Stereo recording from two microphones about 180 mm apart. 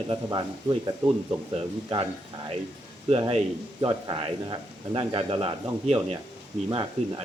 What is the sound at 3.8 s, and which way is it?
Speech, 25° right (ahead or behind).